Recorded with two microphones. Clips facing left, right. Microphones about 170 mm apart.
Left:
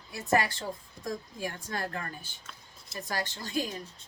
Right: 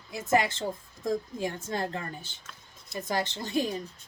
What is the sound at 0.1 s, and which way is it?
A woman's voice, 20° right (ahead or behind).